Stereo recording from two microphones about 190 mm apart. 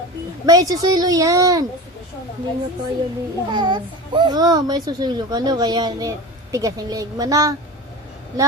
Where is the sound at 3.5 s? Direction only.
25° right (ahead or behind).